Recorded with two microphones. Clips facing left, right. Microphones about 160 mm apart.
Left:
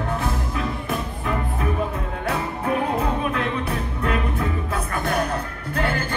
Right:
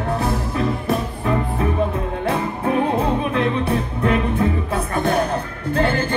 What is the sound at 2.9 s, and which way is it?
Music, 30° right (ahead or behind).